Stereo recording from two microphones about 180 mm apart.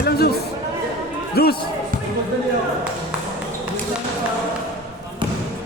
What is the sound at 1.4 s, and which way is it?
Speech, 60° left (ahead or behind).